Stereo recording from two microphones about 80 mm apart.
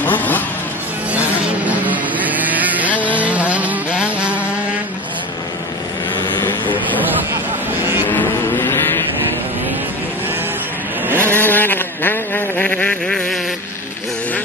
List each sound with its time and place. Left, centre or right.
0.0 s vehicle: left
1.1 s vehicle: centre
3.0 s insect: centre
6.3 s vehicle: left
8.1 s vehicle: left
11.1 s vehicle: right
11.3 s a sound: left